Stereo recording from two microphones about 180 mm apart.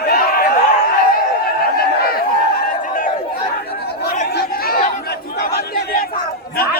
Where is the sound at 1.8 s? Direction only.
60° left (ahead or behind).